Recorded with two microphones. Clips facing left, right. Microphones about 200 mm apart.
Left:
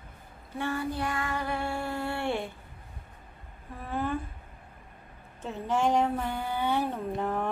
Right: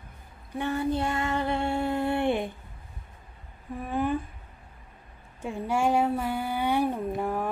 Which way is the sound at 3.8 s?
15° right (ahead or behind).